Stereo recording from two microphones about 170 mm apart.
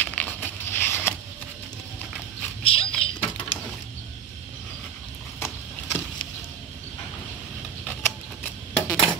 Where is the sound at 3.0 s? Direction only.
35° left (ahead or behind).